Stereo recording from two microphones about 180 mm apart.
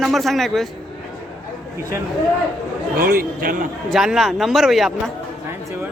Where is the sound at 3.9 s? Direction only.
5° right (ahead or behind).